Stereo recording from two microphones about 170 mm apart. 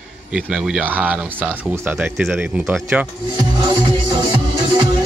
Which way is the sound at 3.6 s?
30° right (ahead or behind).